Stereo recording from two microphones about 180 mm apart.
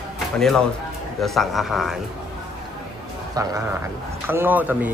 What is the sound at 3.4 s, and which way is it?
Speech, 20° right (ahead or behind).